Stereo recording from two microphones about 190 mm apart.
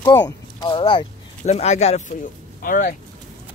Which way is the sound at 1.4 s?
35° left (ahead or behind).